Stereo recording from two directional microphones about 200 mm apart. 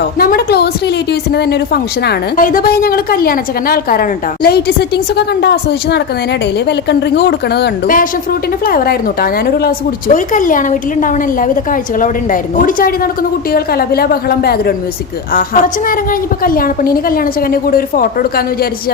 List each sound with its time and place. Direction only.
0.2 s a woman's voice: 50° left (ahead or behind)